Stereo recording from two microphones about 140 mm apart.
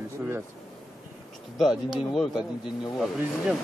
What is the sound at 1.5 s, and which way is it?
Speech, centre (ahead or behind).